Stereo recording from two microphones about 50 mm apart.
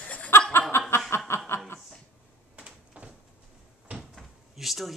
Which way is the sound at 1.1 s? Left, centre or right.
Left.